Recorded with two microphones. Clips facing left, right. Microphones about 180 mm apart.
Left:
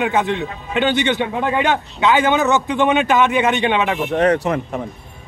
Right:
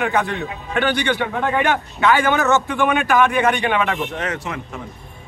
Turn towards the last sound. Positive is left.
turn(degrees=40)  # may be behind; listen again after turning